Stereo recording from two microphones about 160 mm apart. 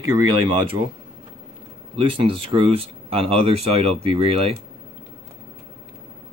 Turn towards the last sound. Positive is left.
turn(degrees=-40)  # may be behind; listen again after turning